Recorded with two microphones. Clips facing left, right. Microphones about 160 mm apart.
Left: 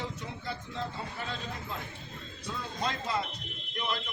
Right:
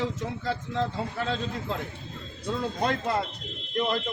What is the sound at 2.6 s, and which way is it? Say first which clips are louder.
Speech: right 7 dB; 55° right (ahead or behind).